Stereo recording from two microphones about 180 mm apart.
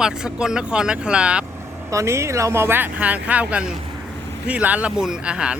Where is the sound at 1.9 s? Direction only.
15° right (ahead or behind).